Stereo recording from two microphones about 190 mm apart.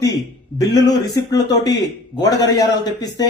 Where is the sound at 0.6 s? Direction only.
20° left (ahead or behind).